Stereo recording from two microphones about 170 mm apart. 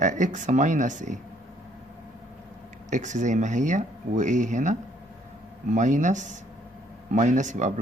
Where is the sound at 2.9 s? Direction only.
45° right (ahead or behind).